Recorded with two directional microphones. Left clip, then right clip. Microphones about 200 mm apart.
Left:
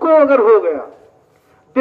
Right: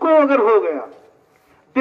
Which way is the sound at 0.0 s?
30° right (ahead or behind).